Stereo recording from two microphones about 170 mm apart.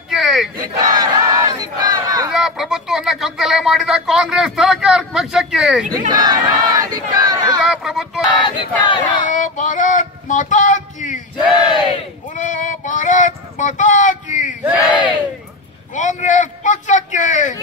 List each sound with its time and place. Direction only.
0.1 s battle cry: centre (ahead or behind)
0.8 s battle cry: 25° right (ahead or behind)
2.3 s speech: centre (ahead or behind)
5.9 s battle cry: 25° right (ahead or behind)
7.6 s speech: 5° right (ahead or behind)
8.5 s speech: 30° left (ahead or behind)
9.3 s a sound: 45° left (ahead or behind)
12.4 s a sound: 45° left (ahead or behind)
14.6 s battle cry: 10° right (ahead or behind)
14.9 s speech: 25° left (ahead or behind)
15.9 s a man's voice: 45° left (ahead or behind)